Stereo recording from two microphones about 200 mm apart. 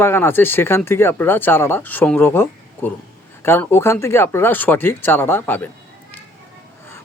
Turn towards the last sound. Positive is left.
turn(degrees=10)  # may be behind; listen again after turning